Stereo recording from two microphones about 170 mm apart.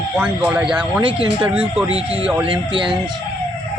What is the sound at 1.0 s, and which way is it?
Speech, 30° right (ahead or behind).